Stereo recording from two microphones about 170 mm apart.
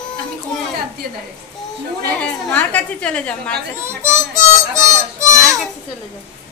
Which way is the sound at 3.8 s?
15° right (ahead or behind).